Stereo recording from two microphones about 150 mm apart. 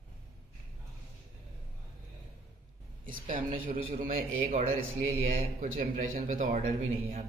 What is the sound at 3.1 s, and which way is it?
A woman's voice, 60° right (ahead or behind).